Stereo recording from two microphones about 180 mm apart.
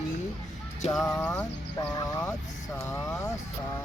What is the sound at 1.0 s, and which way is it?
Speech, 10° left (ahead or behind).